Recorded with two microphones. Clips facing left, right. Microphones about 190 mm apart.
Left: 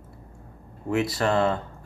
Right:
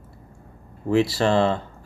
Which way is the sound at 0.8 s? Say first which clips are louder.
Right 4 dB; 30° right (ahead or behind).